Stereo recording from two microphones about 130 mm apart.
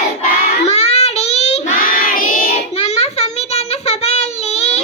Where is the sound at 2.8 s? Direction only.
55° left (ahead or behind).